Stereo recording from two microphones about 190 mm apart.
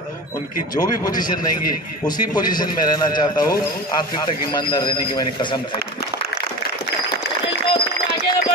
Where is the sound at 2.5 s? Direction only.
25° left (ahead or behind).